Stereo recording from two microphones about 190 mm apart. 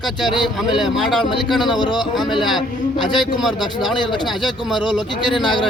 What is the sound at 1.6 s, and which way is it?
Speech, 25° left (ahead or behind).